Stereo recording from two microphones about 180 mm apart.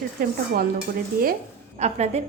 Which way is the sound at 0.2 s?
55° right (ahead or behind).